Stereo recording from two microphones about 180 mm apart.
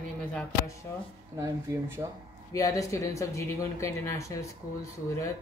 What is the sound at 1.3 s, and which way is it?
Speech, 15° right (ahead or behind).